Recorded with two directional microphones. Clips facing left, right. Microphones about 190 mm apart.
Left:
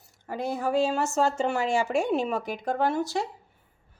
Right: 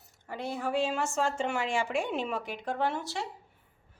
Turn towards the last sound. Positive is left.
turn(degrees=40)  # may be behind; listen again after turning